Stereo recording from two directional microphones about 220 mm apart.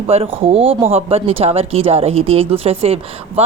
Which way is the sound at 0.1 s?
25° right (ahead or behind).